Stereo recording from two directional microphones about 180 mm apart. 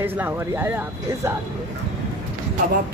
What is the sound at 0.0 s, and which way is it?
Speech, 10° right (ahead or behind).